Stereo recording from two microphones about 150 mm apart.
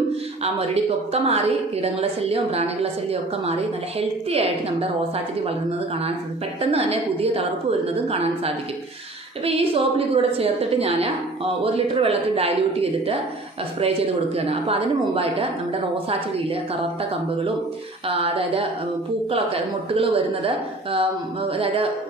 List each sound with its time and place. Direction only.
1.1 s a woman's voice: 40° right (ahead or behind)
6.6 s a woman's voice: 45° right (ahead or behind)
9.4 s a woman's voice: 40° right (ahead or behind)
18.0 s a woman's voice: 40° right (ahead or behind)